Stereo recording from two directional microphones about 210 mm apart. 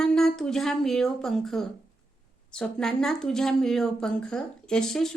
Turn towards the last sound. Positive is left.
turn(degrees=0)  # may be behind; listen again after turning